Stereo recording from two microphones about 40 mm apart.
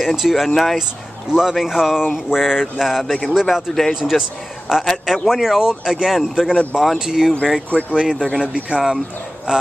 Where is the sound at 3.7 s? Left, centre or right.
Centre.